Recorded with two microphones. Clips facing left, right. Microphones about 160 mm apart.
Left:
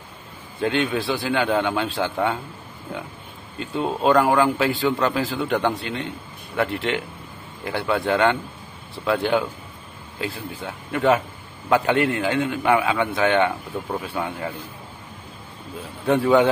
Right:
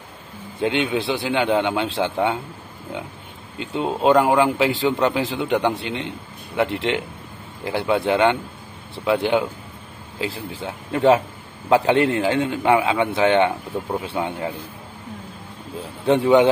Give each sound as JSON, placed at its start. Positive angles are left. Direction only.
{"t": 0.6, "sound": "a man's voice", "side_deg": -15}
{"t": 3.5, "sound": "a man's voice", "side_deg": -20}
{"t": 13.5, "sound": "speech", "side_deg": -10}
{"t": 14.0, "sound": "a man's voice", "side_deg": -25}
{"t": 16.1, "sound": "a man's voice", "side_deg": -20}